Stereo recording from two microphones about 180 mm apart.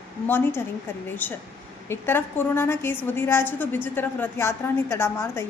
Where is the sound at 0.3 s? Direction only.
10° left (ahead or behind).